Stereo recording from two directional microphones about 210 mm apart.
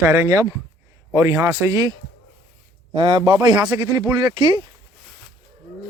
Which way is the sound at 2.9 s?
25° right (ahead or behind).